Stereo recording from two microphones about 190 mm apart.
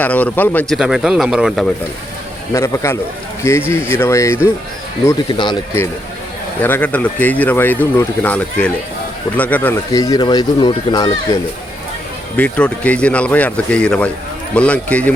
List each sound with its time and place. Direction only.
0.0 s speech: 10° left (ahead or behind)
0.7 s speech: centre (ahead or behind)
2.5 s speech: 15° left (ahead or behind)
12.4 s speech: 5° left (ahead or behind)